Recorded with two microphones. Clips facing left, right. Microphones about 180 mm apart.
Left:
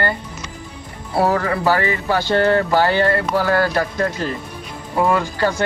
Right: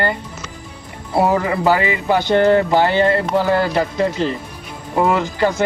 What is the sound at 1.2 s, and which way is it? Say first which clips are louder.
Speech: right 2 dB; 15° right (ahead or behind).